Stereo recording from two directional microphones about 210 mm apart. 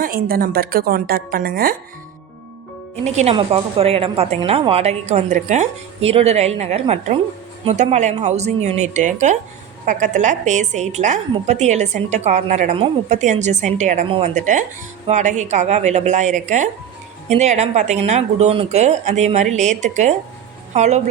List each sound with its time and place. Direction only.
0.0 s a woman's voice: 45° right (ahead or behind)
3.0 s a woman's voice: 30° right (ahead or behind)